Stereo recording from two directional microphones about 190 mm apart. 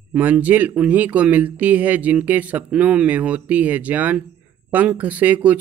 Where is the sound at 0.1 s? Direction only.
10° right (ahead or behind).